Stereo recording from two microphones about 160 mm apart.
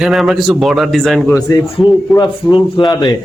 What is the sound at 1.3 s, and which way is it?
A man's voice, 25° left (ahead or behind).